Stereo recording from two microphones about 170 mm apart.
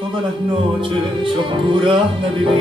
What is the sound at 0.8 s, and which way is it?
Music, 30° right (ahead or behind).